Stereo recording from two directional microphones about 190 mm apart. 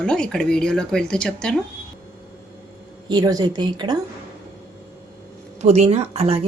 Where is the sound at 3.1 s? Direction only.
20° right (ahead or behind).